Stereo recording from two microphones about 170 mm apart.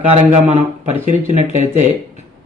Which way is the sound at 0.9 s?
40° left (ahead or behind).